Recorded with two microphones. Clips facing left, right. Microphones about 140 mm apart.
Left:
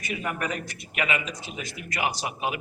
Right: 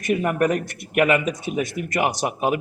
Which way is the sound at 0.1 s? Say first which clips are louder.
Right 11 dB; 55° right (ahead or behind).